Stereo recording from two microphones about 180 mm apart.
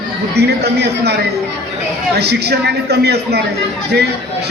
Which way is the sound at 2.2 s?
65° right (ahead or behind).